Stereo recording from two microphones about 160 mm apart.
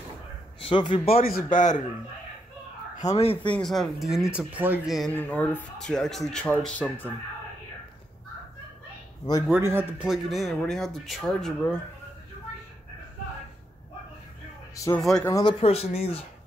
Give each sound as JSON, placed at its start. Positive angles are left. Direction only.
{"t": 0.6, "sound": "a man's voice", "side_deg": 35}
{"t": 1.2, "sound": "a man's voice", "side_deg": 60}
{"t": 3.0, "sound": "speech", "side_deg": 40}
{"t": 3.5, "sound": "speech", "side_deg": 0}
{"t": 5.1, "sound": "speech", "side_deg": 10}
{"t": 9.5, "sound": "speech", "side_deg": -15}
{"t": 10.0, "sound": "speech", "side_deg": 0}
{"t": 15.0, "sound": "speech", "side_deg": 0}
{"t": 15.2, "sound": "speech", "side_deg": 20}
{"t": 15.6, "sound": "speech", "side_deg": 40}